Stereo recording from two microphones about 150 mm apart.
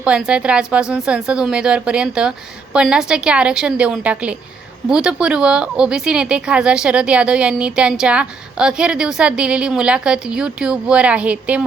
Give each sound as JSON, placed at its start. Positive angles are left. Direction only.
{"t": 0.0, "sound": "speech", "side_deg": -5}